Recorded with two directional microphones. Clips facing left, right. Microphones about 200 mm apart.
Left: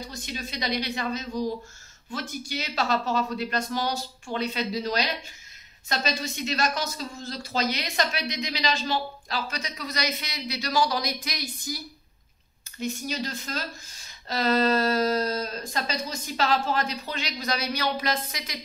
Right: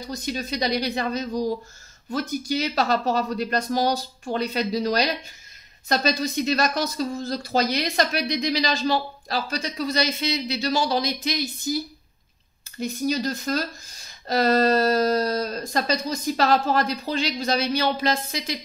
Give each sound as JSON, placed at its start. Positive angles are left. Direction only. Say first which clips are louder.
{"t": 0.1, "sound": "speech", "louder": "right 7 dB", "side_deg": -40}
{"t": 12.7, "sound": "speech", "louder": "right 6 dB", "side_deg": -40}